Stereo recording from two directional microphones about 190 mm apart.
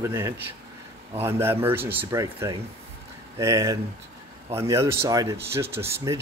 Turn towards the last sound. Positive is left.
turn(degrees=-15)  # may be behind; listen again after turning